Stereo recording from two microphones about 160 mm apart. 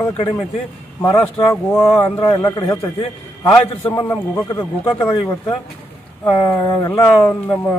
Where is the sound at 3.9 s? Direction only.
25° left (ahead or behind).